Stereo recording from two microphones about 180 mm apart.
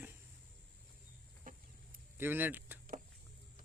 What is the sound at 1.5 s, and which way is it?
Chicken, 50° right (ahead or behind).